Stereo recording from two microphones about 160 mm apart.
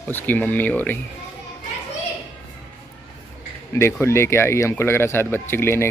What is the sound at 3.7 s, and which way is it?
Speech, 15° left (ahead or behind).